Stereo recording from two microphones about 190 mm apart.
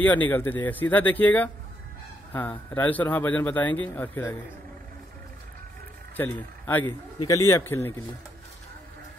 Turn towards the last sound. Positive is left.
turn(degrees=10)  # may be behind; listen again after turning